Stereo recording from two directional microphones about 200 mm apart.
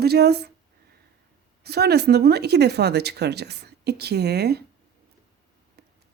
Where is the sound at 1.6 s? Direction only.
55° right (ahead or behind).